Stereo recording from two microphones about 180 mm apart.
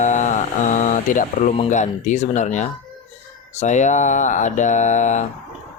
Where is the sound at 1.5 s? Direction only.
40° left (ahead or behind).